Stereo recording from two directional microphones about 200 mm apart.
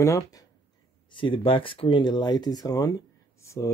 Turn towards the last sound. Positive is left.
turn(degrees=15)  # may be behind; listen again after turning